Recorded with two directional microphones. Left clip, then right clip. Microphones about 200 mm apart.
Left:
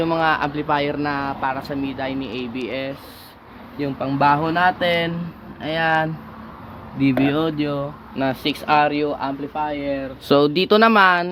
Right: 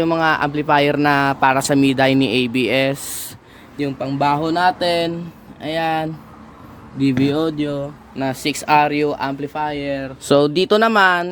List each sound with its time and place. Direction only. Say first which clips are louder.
0.0 s a man's voice: right 2 dB; 30° right (ahead or behind); by 2.9 s 65° right (ahead or behind)
3.8 s speech: even; 25° right (ahead or behind); by 10.1 s 50° right (ahead or behind)
10.2 s speech: right 2 dB; 15° right (ahead or behind)